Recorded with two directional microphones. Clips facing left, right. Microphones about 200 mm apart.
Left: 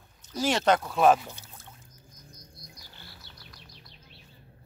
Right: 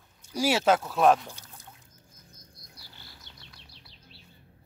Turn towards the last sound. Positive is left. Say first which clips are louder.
# left 1 dB
turn(degrees=-20)  # may be behind; listen again after turning